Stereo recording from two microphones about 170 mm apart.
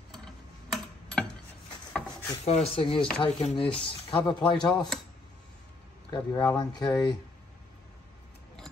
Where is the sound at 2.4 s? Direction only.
35° left (ahead or behind).